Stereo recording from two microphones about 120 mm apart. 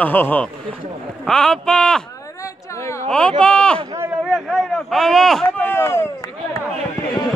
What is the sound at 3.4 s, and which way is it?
Speech, 10° left (ahead or behind).